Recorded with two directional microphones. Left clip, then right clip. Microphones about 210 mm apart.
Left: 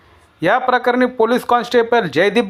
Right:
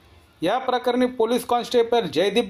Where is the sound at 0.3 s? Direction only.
20° left (ahead or behind).